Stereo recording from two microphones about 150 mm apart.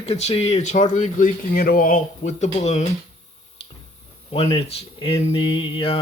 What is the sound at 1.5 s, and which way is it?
Speech, 80° left.